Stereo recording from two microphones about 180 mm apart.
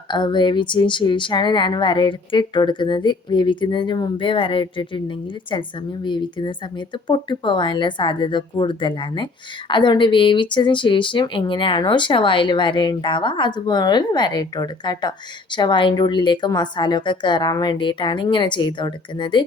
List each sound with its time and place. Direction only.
0.1 s speech: 25° left (ahead or behind)